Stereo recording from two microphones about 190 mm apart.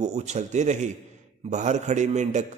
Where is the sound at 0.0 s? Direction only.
35° right (ahead or behind).